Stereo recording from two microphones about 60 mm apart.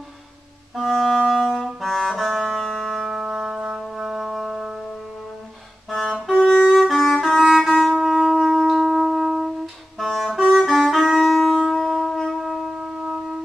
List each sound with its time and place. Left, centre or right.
0.7 s brass instrument: centre
3.9 s music: centre
5.9 s music: centre
6.3 s saxophone: centre
6.7 s music: centre
7.6 s wind instrument: centre
7.9 s shofar: centre
9.9 s music: centre
10.5 s wind instrument: centre
12.2 s shofar: centre